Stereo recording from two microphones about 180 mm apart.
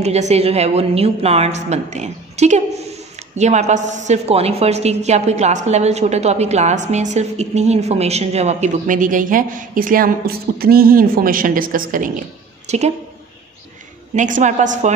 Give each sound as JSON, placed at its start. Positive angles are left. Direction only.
{"t": 0.0, "sound": "a woman's voice", "side_deg": -35}
{"t": 12.6, "sound": "a woman's voice", "side_deg": -40}
{"t": 14.1, "sound": "a woman's voice", "side_deg": -45}